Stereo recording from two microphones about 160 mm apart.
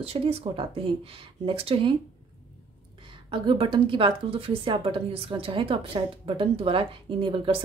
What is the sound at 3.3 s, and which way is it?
Speech, 30° right (ahead or behind).